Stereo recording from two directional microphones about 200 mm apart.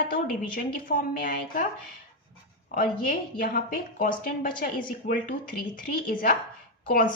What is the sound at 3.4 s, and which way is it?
A woman's voice, 45° left (ahead or behind).